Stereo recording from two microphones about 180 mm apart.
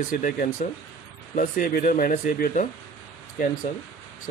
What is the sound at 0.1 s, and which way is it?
Speech, 50° left (ahead or behind).